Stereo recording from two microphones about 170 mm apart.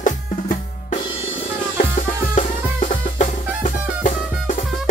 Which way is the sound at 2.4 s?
45° left (ahead or behind).